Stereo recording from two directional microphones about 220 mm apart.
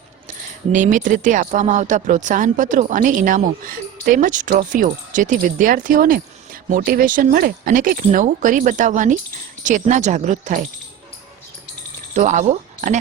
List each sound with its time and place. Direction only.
0.7 s speech: 35° right (ahead or behind)
12.1 s speech: 35° right (ahead or behind)